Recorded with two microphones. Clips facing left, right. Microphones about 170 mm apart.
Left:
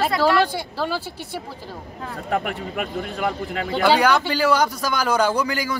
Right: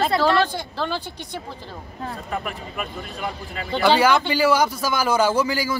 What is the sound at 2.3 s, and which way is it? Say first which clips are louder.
A man's voice: left 9 dB; 65° left (ahead or behind).